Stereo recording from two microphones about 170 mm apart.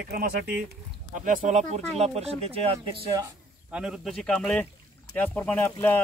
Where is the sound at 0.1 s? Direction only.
65° right (ahead or behind).